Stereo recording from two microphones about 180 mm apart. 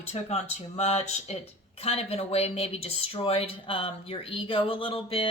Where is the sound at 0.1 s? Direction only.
40° left (ahead or behind).